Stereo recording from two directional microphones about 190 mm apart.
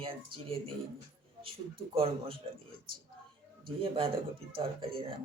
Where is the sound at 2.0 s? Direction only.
30° right (ahead or behind).